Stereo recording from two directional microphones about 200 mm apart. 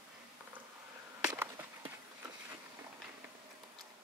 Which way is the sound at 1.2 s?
20° right (ahead or behind).